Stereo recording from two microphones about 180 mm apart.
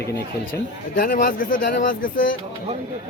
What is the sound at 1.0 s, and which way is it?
Speech, 50° left (ahead or behind).